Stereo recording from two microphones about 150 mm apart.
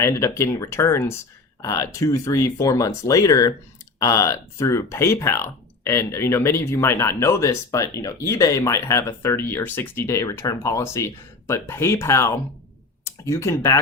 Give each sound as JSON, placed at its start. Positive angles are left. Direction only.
{"t": 0.0, "sound": "speech", "side_deg": 20}